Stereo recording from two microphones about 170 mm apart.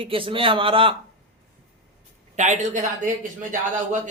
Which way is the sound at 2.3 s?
45° right (ahead or behind).